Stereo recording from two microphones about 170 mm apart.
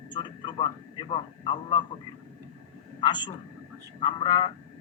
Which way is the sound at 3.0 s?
25° left (ahead or behind).